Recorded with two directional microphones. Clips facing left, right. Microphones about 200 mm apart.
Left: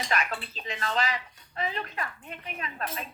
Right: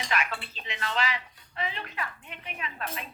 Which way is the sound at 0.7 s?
40° left (ahead or behind).